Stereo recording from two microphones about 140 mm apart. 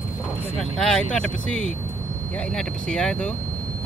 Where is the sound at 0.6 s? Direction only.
5° left (ahead or behind).